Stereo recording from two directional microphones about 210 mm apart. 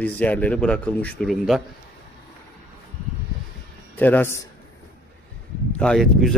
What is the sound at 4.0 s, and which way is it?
Speech, 10° left (ahead or behind).